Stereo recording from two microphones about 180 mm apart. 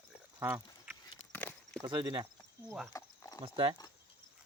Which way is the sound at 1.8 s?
20° right (ahead or behind).